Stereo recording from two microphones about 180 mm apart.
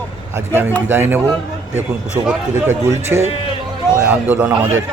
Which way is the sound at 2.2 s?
15° right (ahead or behind).